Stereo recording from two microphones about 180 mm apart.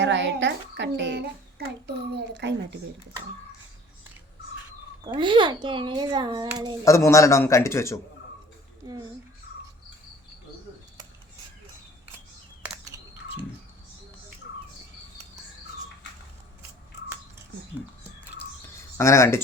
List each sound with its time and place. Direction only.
0.0 s a child's voice: 85° right; by 1.7 s 65° right (ahead or behind)
2.1 s speech: 75° right (ahead or behind)
5.0 s a child's voice: 25° right (ahead or behind)
6.8 s a man's voice: 15° left (ahead or behind)
8.8 s a child's voice: 25° right (ahead or behind)
12.9 s a sound: 15° right (ahead or behind)
18.9 s a man's voice: 15° left (ahead or behind)